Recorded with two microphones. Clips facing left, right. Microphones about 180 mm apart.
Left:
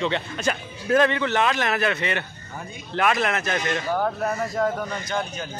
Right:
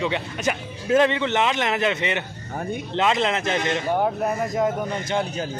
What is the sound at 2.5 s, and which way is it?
Speech, 55° right (ahead or behind).